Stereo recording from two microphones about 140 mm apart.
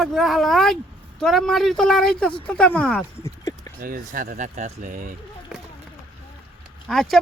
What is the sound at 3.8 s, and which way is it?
Speech, 75° right (ahead or behind).